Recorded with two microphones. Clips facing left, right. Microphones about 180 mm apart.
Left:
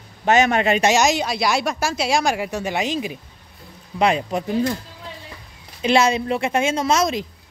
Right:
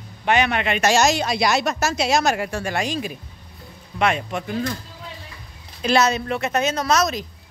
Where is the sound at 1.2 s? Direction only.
5° left (ahead or behind).